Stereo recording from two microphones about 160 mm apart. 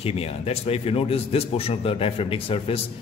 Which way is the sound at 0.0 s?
40° left (ahead or behind).